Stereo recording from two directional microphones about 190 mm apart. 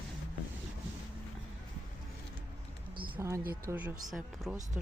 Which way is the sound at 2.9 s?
25° right (ahead or behind).